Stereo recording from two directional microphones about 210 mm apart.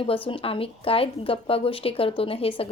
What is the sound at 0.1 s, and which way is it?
A woman's voice, 25° left (ahead or behind).